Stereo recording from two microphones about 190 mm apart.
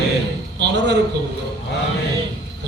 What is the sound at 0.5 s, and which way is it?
Speech, 65° right (ahead or behind).